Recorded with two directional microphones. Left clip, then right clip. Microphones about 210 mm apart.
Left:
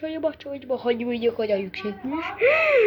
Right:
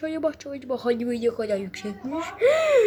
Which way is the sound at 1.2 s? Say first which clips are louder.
Left 2 dB; 10° right (ahead or behind).